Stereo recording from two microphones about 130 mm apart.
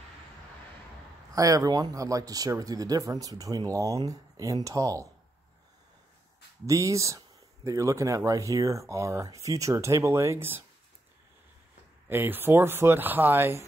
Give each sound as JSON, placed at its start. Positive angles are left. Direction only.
{"t": 1.3, "sound": "speech", "side_deg": -25}
{"t": 6.6, "sound": "speech", "side_deg": -25}
{"t": 12.1, "sound": "speech", "side_deg": -15}